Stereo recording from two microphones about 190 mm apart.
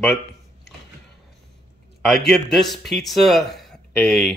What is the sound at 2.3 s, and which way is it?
Speech, centre (ahead or behind).